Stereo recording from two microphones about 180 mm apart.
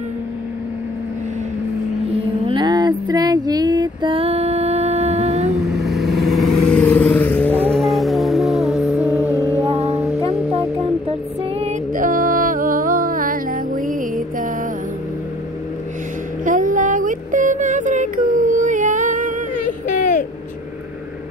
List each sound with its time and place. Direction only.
2.4 s music: 25° right (ahead or behind)
5.7 s vehicle: centre (ahead or behind)
9.3 s music: 15° left (ahead or behind)
11.6 s music: 50° right (ahead or behind)
16.4 s a sound: 45° right (ahead or behind)
19.5 s a sound: 45° left (ahead or behind)